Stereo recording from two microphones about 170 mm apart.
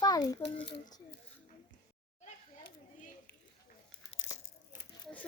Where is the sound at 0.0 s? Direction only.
20° left (ahead or behind).